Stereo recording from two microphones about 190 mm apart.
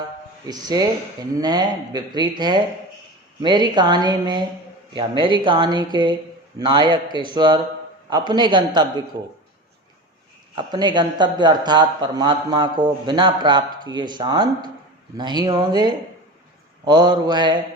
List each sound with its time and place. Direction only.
0.4 s a man's voice: 20° right (ahead or behind)
3.4 s a man's voice: 25° right (ahead or behind)
10.5 s a man's voice: 25° right (ahead or behind)